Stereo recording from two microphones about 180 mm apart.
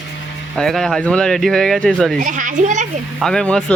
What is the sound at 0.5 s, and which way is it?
Speech, 5° left (ahead or behind).